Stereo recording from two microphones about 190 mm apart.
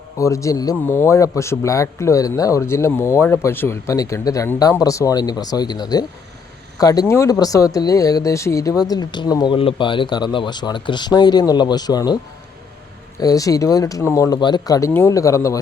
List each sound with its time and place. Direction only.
0.2 s speech: 15° left (ahead or behind)
13.2 s speech: 20° left (ahead or behind)